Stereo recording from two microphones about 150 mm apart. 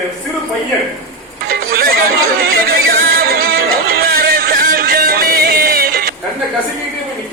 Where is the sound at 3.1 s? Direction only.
90° right.